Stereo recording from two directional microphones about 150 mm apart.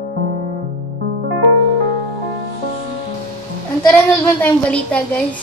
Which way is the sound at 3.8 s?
10° left (ahead or behind).